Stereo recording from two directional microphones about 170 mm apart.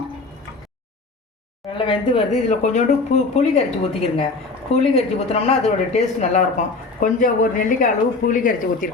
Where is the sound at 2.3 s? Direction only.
45° left (ahead or behind).